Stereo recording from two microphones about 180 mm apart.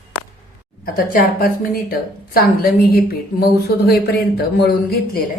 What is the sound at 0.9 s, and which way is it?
A woman's voice, 50° left (ahead or behind).